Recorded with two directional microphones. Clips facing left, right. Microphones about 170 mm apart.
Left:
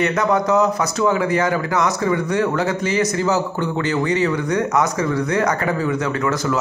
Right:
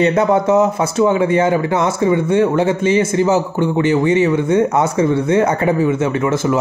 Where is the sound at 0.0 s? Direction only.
30° right (ahead or behind).